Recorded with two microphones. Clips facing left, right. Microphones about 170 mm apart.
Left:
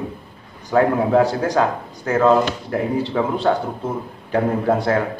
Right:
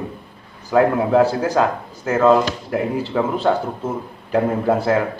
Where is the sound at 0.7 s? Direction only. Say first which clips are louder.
Right 1 dB; centre (ahead or behind).